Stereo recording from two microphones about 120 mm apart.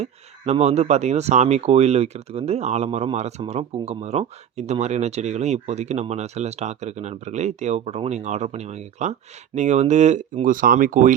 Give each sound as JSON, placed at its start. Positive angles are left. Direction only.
{"t": 0.0, "sound": "speech", "side_deg": -70}